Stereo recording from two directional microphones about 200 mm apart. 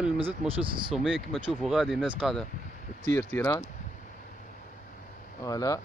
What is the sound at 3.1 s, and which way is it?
Speech, 10° left (ahead or behind).